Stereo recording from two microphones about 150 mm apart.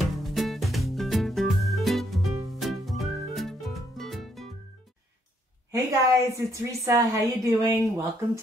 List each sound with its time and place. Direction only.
0.0 s music: centre (ahead or behind)
5.7 s a woman's voice: 20° right (ahead or behind)